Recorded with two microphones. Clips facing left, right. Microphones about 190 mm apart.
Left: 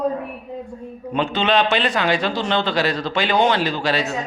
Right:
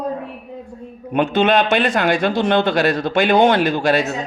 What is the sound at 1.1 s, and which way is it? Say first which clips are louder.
A man's voice: right 4 dB; 50° right (ahead or behind).